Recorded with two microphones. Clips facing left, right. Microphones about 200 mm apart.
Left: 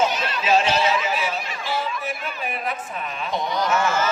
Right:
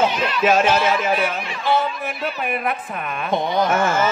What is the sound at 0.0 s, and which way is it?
A woman's voice, 55° right (ahead or behind).